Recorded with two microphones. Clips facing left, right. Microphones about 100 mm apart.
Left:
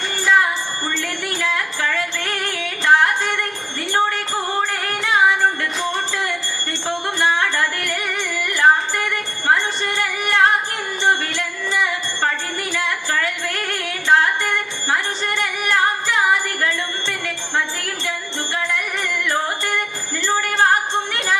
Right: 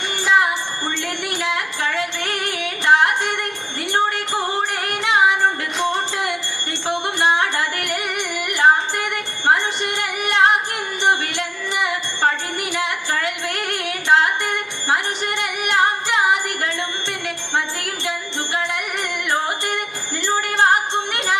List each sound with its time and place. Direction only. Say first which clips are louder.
0.2 s music: even; 20° right (ahead or behind)
17.6 s jingle bell: left 1 dB; 20° right (ahead or behind)
20.2 s music: even; 20° right (ahead or behind)